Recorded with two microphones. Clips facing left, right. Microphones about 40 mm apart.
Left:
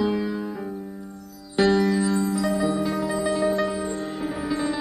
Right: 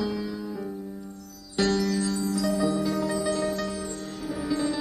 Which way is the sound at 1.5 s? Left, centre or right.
Left.